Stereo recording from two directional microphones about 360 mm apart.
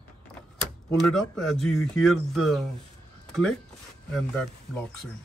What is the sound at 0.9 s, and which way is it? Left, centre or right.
A man's voice, centre.